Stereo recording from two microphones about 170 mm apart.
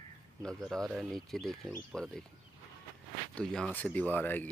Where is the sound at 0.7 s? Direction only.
Centre (ahead or behind).